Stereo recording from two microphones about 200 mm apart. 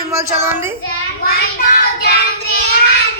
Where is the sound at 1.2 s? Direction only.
50° left (ahead or behind).